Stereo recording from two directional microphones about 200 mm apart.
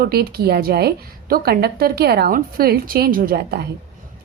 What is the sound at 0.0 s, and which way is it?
A woman's voice, 50° right (ahead or behind).